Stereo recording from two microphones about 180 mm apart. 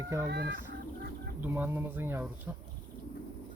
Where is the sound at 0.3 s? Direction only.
65° right (ahead or behind).